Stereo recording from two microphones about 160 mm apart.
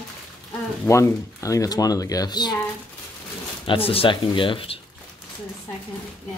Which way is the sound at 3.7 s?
35° left (ahead or behind).